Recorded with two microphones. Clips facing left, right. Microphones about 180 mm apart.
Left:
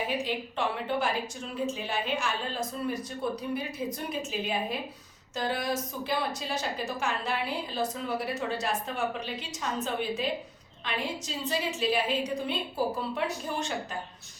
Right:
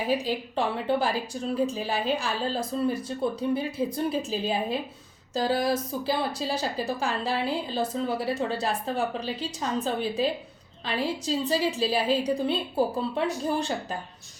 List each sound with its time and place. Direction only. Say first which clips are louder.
0.1 s a woman's voice: right 5 dB; 35° right (ahead or behind)